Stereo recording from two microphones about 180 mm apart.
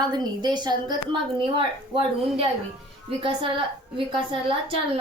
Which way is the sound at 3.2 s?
30° right (ahead or behind).